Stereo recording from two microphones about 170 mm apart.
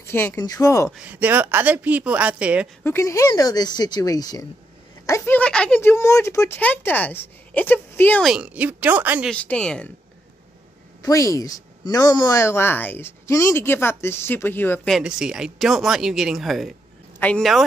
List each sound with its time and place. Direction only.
0.0 s speech: 15° left (ahead or behind)
0.8 s speech: 5° right (ahead or behind)
2.8 s speech: 15° left (ahead or behind)
8.2 s speech: 5° right (ahead or behind)
9.3 s speech: 5° left (ahead or behind)
11.0 s speech: 20° left (ahead or behind)
14.9 s speech: 5° right (ahead or behind)